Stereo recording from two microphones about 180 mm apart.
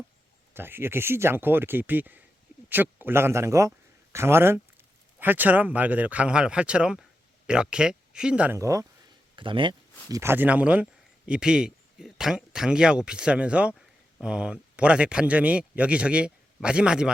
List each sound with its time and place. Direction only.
0.5 s a man's voice: 10° right (ahead or behind)
9.3 s speech: 25° right (ahead or behind)
10.1 s speech: 15° right (ahead or behind)